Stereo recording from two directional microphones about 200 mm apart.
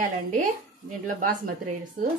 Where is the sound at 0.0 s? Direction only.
40° right (ahead or behind).